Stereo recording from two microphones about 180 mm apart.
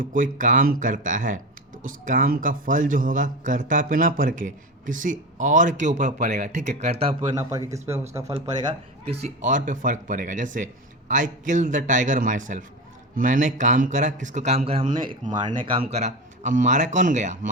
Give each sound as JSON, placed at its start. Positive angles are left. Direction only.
{"t": 0.0, "sound": "a man's voice", "side_deg": -50}
{"t": 7.7, "sound": "speech", "side_deg": -15}
{"t": 8.6, "sound": "a man's voice", "side_deg": -35}
{"t": 15.2, "sound": "a man's voice", "side_deg": -45}
{"t": 15.4, "sound": "speech", "side_deg": -35}